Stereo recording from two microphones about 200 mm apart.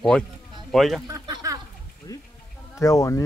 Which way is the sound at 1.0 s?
20° right (ahead or behind).